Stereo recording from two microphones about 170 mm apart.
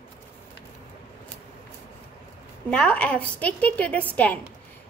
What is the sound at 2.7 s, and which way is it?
A woman's voice, 5° left (ahead or behind).